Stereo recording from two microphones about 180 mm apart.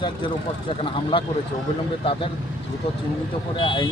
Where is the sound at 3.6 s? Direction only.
25° left (ahead or behind).